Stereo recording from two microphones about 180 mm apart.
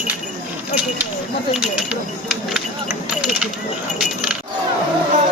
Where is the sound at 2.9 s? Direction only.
5° right (ahead or behind).